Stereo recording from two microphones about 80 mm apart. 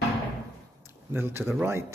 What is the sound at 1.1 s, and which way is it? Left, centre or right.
Speech, right.